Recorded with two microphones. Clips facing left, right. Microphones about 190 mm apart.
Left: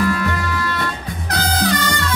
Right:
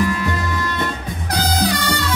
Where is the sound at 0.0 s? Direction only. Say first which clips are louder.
Left 1 dB; 15° right (ahead or behind).